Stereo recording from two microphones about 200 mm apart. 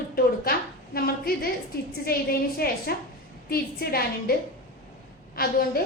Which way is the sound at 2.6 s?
50° left (ahead or behind).